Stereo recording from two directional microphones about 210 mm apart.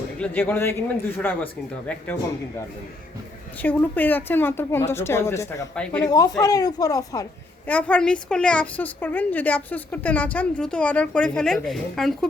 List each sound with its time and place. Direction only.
0.2 s a woman's voice: 10° left (ahead or behind)
3.6 s a woman's voice: 10° left (ahead or behind)
6.1 s a woman's voice: 15° left (ahead or behind); by 12.3 s centre (ahead or behind)